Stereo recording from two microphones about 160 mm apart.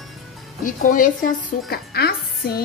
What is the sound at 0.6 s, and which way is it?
A woman's voice, 60° left (ahead or behind).